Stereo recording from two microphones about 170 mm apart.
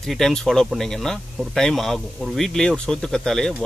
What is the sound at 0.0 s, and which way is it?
Speech, centre (ahead or behind).